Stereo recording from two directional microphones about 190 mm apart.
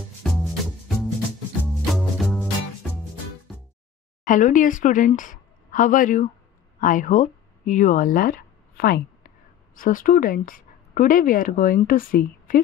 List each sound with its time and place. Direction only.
0.2 s music: centre (ahead or behind)
4.3 s speech: 45° left (ahead or behind)